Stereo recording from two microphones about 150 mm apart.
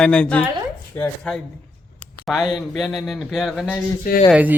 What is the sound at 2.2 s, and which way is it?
Speech, 5° right (ahead or behind).